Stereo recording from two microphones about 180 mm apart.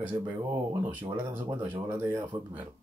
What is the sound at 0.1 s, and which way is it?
Speech, 20° right (ahead or behind).